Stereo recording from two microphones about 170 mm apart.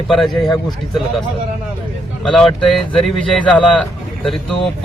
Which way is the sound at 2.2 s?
Centre (ahead or behind).